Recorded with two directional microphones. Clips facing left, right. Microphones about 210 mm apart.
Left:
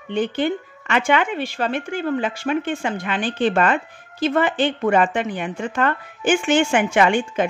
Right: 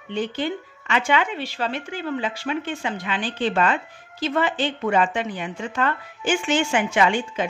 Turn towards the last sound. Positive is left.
turn(degrees=55)  # may be behind; listen again after turning